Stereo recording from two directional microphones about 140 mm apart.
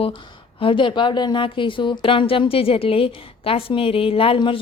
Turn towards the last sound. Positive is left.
turn(degrees=40)  # may be behind; listen again after turning